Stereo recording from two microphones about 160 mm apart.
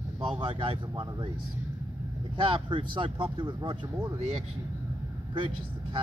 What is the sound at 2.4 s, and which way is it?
Speech, 35° right (ahead or behind).